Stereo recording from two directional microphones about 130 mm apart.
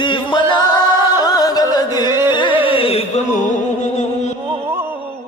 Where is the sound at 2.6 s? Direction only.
45° left (ahead or behind).